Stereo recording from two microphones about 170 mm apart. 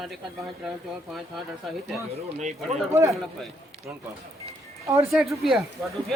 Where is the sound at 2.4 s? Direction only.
45° right (ahead or behind).